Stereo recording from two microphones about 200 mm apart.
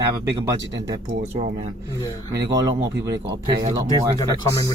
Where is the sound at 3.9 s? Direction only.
20° left (ahead or behind).